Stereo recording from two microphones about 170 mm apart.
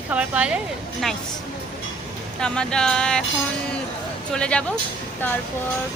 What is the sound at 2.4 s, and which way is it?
Speech, 5° left (ahead or behind).